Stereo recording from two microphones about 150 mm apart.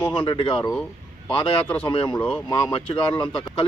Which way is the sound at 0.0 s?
30° left (ahead or behind).